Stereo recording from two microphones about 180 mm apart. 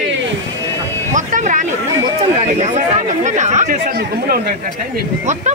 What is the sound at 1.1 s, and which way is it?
Speech, 45° right (ahead or behind).